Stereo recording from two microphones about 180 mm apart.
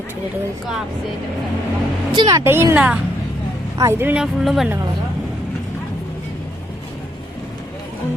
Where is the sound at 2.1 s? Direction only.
25° right (ahead or behind); by 4.7 s centre (ahead or behind).